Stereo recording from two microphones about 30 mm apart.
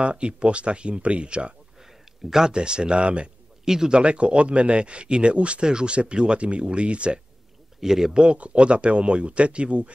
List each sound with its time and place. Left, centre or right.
0.0 s speech: right
2.2 s speech: centre
2.5 s speech: right
3.6 s a man's voice: centre
3.9 s speech: right
5.7 s speech: right
7.8 s speech: centre
8.1 s speech: right